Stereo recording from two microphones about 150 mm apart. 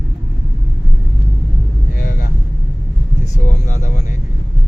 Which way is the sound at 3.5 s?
55° left (ahead or behind).